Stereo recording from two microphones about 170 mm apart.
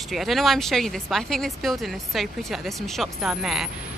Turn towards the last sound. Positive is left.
turn(degrees=0)  # may be behind; listen again after turning